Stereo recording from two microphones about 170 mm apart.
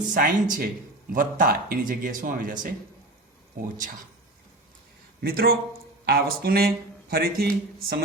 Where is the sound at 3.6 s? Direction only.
50° right (ahead or behind).